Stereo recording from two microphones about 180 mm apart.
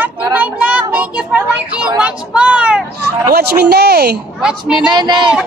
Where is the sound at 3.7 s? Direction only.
60° right (ahead or behind).